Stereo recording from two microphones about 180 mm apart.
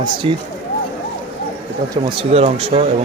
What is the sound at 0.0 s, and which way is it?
Speech, 25° right (ahead or behind).